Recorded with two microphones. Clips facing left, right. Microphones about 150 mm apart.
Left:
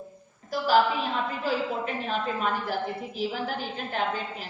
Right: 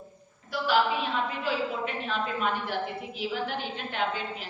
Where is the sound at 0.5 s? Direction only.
40° left (ahead or behind).